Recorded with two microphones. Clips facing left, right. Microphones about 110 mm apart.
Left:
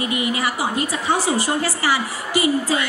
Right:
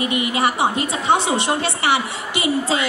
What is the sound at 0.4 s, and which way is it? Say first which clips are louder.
A woman's voice: right 3 dB; 25° right (ahead or behind).